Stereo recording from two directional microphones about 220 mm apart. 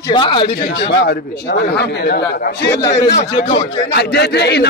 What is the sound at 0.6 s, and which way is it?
Speech, 50° left (ahead or behind).